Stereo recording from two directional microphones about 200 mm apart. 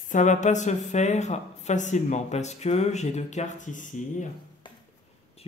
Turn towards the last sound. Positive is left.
turn(degrees=40)  # may be behind; listen again after turning